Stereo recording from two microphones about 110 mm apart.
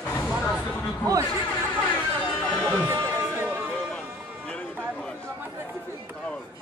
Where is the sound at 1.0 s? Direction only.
35° right (ahead or behind).